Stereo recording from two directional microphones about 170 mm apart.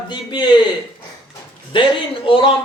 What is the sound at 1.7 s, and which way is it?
Speech, 30° left (ahead or behind).